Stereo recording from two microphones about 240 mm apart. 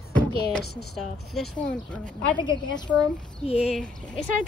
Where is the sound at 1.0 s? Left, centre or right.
Centre.